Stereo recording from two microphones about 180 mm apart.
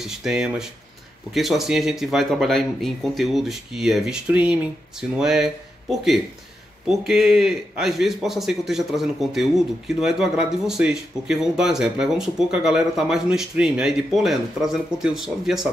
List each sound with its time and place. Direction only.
0.0 s speech: centre (ahead or behind)